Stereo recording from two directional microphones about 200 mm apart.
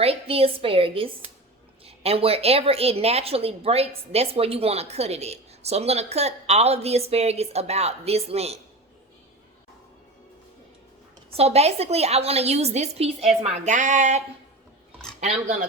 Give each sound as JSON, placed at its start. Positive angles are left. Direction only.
{"t": 0.0, "sound": "a woman's voice", "side_deg": -30}
{"t": 11.3, "sound": "a woman's voice", "side_deg": -30}
{"t": 15.2, "sound": "a woman's voice", "side_deg": -35}